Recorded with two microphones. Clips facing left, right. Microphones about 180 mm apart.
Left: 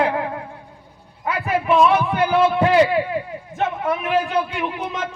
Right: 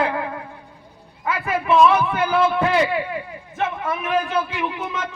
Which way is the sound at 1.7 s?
20° left (ahead or behind).